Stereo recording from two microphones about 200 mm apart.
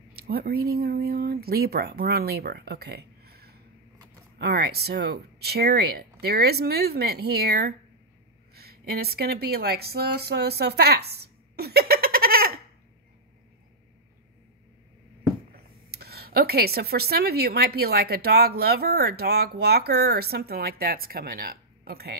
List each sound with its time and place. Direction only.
0.1 s speech: 50° right (ahead or behind)
15.9 s speech: 50° right (ahead or behind)